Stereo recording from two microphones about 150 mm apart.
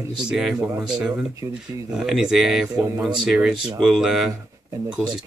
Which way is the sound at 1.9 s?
5° right (ahead or behind).